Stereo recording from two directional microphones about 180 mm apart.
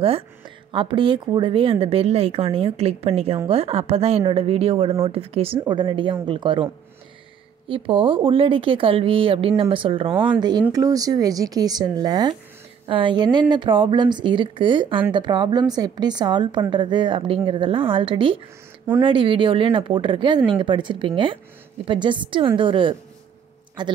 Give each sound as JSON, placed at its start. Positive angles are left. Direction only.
{"t": 0.7, "sound": "a woman's voice", "side_deg": -30}